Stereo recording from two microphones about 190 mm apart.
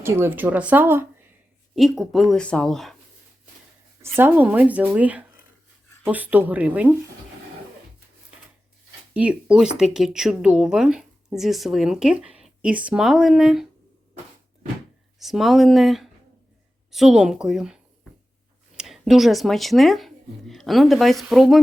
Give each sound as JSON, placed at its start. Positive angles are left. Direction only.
{"t": 0.0, "sound": "speech", "side_deg": -10}
{"t": 4.2, "sound": "speech", "side_deg": -10}
{"t": 9.1, "sound": "speech", "side_deg": -5}
{"t": 15.2, "sound": "speech", "side_deg": 0}
{"t": 18.8, "sound": "speech", "side_deg": 0}